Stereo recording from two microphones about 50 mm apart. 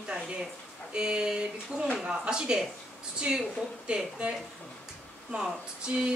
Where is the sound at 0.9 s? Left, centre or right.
Centre.